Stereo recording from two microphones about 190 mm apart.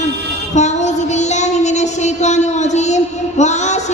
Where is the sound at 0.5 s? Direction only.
35° left (ahead or behind).